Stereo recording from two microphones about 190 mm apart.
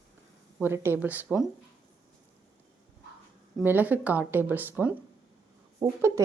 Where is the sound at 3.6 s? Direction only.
10° right (ahead or behind).